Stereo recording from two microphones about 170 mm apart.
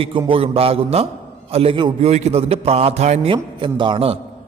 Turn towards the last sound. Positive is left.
turn(degrees=-30)  # may be behind; listen again after turning